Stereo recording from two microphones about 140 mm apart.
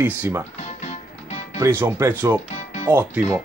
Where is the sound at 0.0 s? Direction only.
10° right (ahead or behind).